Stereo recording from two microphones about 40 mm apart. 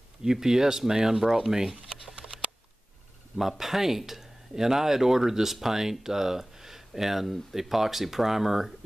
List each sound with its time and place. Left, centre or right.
0.2 s speech: centre
2.1 s patter: right
3.3 s speech: centre